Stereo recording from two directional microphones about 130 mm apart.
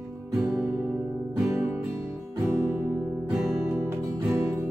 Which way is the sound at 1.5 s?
15° right (ahead or behind).